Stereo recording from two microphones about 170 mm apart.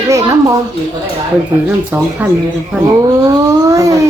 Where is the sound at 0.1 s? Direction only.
20° right (ahead or behind).